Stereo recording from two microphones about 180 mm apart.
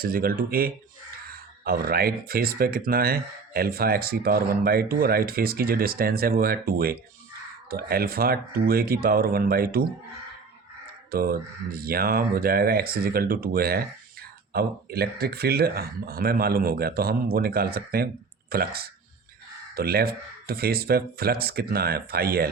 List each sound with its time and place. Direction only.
0.0 s speech: 55° right (ahead or behind)
11.1 s speech: 55° right (ahead or behind)